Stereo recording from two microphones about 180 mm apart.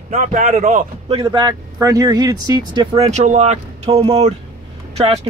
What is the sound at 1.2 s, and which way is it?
Speech, 25° right (ahead or behind).